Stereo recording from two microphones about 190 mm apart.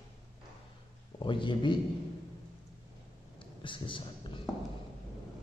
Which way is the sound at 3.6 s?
25° left (ahead or behind).